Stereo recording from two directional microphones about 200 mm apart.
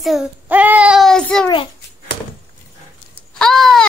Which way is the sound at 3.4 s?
Centre (ahead or behind).